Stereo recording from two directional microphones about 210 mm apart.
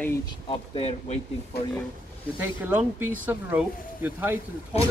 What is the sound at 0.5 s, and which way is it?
Speech, 30° left (ahead or behind).